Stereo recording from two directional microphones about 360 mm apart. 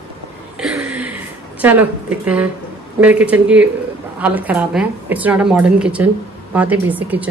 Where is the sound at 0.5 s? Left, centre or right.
Centre.